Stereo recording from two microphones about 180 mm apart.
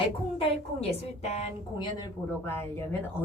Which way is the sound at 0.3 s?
35° left (ahead or behind).